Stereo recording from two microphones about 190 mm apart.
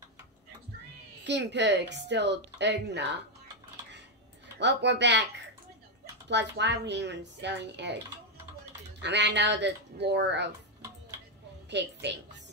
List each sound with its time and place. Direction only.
1.2 s a woman's voice: 65° right (ahead or behind)
4.6 s a woman's voice: 65° right (ahead or behind)
6.2 s a woman's voice: 65° right (ahead or behind)
9.0 s a woman's voice: 65° right (ahead or behind)
11.7 s a woman's voice: 65° right (ahead or behind)